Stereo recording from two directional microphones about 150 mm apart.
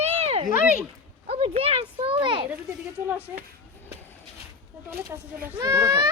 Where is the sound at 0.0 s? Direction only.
45° right (ahead or behind).